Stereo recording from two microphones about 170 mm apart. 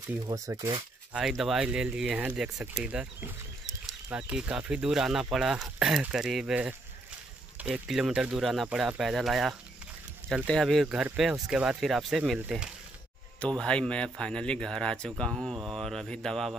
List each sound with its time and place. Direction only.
0.3 s speech: 20° right (ahead or behind)
1.1 s speech: centre (ahead or behind)